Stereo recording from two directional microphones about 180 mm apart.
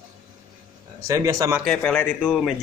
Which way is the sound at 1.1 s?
20° right (ahead or behind).